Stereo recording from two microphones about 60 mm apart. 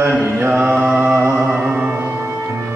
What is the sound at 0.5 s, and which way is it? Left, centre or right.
Mantra, right.